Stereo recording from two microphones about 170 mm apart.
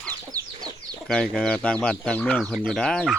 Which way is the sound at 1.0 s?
5° left (ahead or behind).